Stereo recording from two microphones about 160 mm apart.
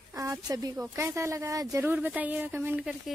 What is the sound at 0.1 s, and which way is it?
A woman's voice, 20° right (ahead or behind).